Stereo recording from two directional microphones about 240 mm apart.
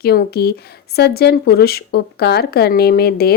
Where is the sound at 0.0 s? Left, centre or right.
Left.